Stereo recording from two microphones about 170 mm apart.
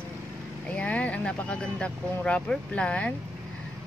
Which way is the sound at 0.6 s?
10° left (ahead or behind).